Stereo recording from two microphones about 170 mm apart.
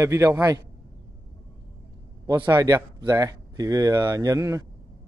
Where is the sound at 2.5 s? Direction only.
25° right (ahead or behind).